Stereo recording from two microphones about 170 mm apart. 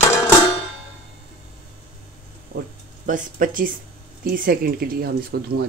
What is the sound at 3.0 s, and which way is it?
Speech, 50° right (ahead or behind).